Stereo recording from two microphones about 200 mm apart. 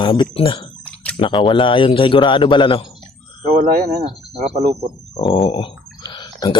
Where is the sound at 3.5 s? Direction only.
45° right (ahead or behind).